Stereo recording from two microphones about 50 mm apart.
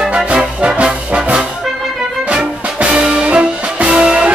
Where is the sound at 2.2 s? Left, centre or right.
Right.